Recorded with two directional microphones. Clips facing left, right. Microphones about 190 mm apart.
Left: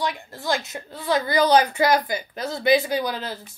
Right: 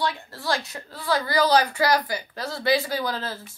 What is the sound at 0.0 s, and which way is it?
A woman's voice, 15° left (ahead or behind).